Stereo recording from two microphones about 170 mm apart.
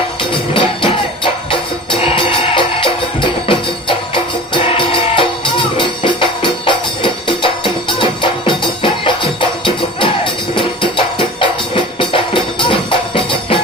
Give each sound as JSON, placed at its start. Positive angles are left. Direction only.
{"t": 0.2, "sound": "music", "side_deg": 30}